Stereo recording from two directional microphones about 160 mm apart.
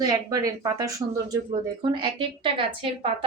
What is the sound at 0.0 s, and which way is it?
A woman's voice, 25° right (ahead or behind).